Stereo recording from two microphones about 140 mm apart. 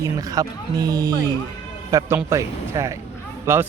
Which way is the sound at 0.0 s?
25° right (ahead or behind).